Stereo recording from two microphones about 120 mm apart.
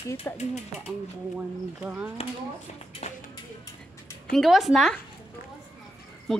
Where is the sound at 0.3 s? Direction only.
20° left (ahead or behind).